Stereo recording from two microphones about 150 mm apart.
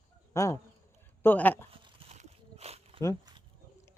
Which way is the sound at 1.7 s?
40° right (ahead or behind).